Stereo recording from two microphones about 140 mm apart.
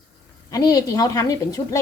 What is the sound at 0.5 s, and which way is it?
Speech, 25° left (ahead or behind).